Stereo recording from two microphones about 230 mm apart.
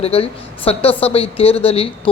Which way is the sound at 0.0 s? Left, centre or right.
Left.